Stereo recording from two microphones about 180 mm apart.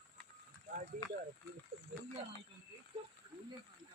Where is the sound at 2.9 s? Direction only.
30° right (ahead or behind).